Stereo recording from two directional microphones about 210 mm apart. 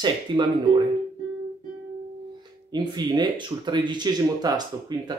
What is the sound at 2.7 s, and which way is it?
Speech, 20° right (ahead or behind).